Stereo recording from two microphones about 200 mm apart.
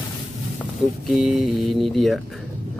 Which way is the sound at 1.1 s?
Centre (ahead or behind).